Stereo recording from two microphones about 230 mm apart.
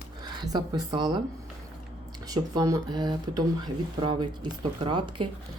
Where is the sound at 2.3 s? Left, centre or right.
Centre.